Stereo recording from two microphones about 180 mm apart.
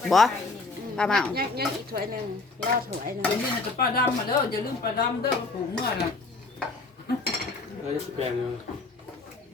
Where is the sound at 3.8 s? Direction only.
55° left (ahead or behind).